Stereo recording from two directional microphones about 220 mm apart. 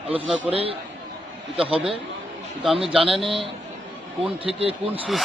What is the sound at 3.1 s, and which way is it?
Speech, centre (ahead or behind).